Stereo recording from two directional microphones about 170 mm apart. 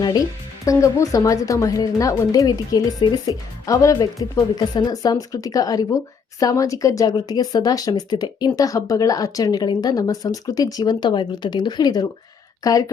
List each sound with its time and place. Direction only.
0.0 s speech: 25° left (ahead or behind)